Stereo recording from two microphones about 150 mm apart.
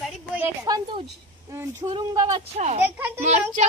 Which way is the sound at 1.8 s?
30° right (ahead or behind).